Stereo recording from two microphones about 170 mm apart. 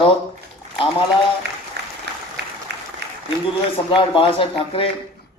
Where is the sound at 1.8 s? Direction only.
75° right (ahead or behind).